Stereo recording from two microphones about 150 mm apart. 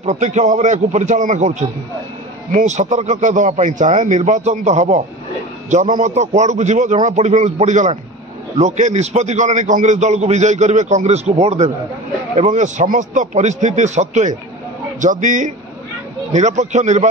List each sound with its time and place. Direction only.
0.0 s a man's voice: 50° right (ahead or behind)